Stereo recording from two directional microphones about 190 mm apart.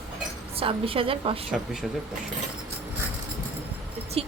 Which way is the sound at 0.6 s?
30° right (ahead or behind).